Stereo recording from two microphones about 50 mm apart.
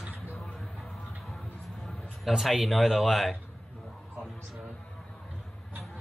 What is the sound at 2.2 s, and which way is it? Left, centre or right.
Speech, centre.